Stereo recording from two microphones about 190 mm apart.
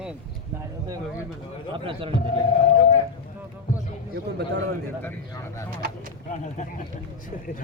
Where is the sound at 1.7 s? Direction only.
25° right (ahead or behind).